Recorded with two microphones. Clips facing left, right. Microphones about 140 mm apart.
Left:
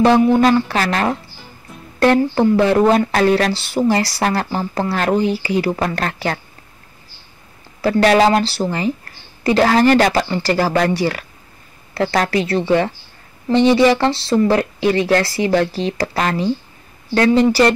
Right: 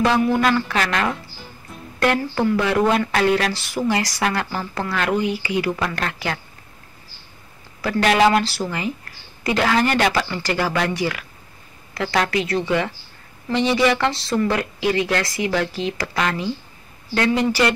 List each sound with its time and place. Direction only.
0.0 s speech: 30° left (ahead or behind)
7.8 s speech: 35° left (ahead or behind)